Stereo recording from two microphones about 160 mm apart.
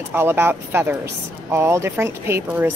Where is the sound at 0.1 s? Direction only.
15° right (ahead or behind).